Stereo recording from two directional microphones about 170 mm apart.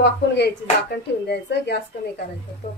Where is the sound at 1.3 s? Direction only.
75° left (ahead or behind).